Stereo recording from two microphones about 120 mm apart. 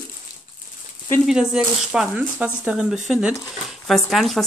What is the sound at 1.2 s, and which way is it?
Speech, 5° right (ahead or behind).